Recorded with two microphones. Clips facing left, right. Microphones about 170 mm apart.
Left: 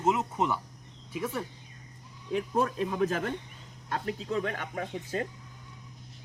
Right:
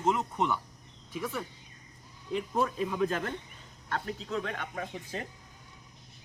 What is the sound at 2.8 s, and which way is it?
Speech, 5° left (ahead or behind).